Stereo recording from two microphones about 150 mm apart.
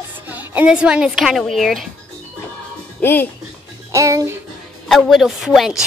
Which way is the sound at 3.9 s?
20° right (ahead or behind).